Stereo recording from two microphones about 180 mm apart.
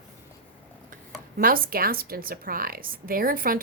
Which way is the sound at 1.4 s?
55° right (ahead or behind).